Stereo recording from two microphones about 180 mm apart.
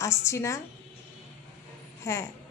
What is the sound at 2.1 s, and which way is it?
Speech, 15° left (ahead or behind).